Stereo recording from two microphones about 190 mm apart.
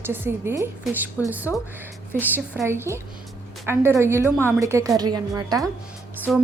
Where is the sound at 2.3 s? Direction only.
10° right (ahead or behind).